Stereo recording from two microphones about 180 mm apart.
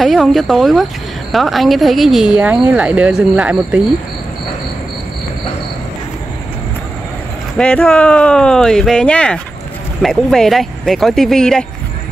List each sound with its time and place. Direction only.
0.0 s speech: centre (ahead or behind)
7.5 s speech: 5° left (ahead or behind)